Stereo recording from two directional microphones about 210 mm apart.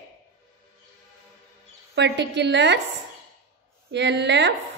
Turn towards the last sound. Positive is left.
turn(degrees=-55)  # may be behind; listen again after turning